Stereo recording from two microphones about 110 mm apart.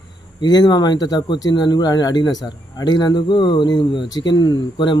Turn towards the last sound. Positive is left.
turn(degrees=40)  # may be behind; listen again after turning